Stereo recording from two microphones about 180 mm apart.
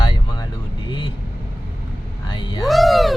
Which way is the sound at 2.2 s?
25° left (ahead or behind).